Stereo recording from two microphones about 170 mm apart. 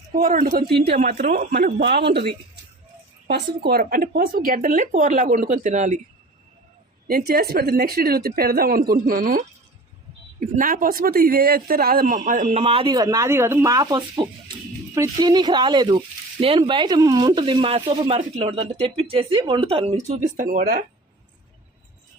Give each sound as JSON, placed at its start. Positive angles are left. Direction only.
{"t": 0.1, "sound": "speech", "side_deg": -55}
{"t": 0.9, "sound": "speech", "side_deg": -45}
{"t": 1.8, "sound": "speech", "side_deg": -75}
{"t": 3.6, "sound": "speech", "side_deg": -65}
{"t": 7.1, "sound": "speech", "side_deg": -65}